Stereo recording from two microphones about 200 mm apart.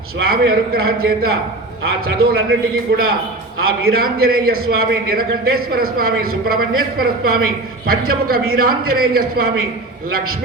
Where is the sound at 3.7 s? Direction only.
50° right (ahead or behind).